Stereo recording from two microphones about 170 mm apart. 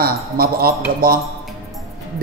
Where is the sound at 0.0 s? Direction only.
60° right (ahead or behind).